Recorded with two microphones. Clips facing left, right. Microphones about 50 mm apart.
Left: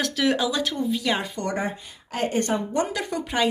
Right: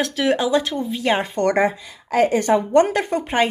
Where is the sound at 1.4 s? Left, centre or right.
Right.